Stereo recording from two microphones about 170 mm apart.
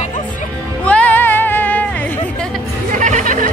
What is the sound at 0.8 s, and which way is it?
Music, 10° left (ahead or behind).